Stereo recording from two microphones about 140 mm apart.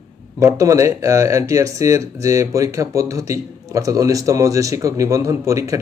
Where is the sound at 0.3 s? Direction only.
20° right (ahead or behind).